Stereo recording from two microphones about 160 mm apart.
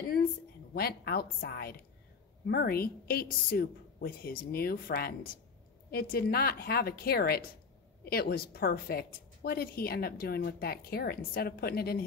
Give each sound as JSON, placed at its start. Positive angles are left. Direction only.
{"t": 0.7, "sound": "a woman's voice", "side_deg": 75}